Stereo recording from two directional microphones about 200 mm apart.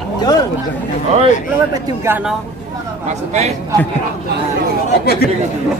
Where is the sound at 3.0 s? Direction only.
35° right (ahead or behind).